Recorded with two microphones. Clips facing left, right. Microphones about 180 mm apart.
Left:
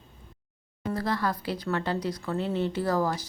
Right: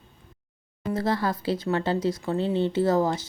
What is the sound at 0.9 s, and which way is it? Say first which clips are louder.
Speech: right 3 dB; 25° right (ahead or behind).